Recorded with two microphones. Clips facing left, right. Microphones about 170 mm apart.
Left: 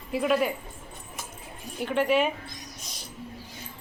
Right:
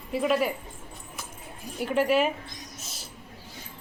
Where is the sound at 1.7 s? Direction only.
5° right (ahead or behind).